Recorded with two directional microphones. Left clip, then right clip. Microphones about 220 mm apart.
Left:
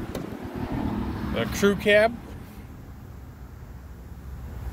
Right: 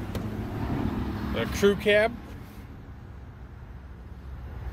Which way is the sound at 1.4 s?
20° left (ahead or behind).